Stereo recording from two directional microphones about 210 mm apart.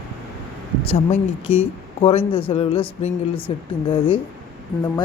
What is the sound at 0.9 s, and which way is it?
Speech, 30° left (ahead or behind).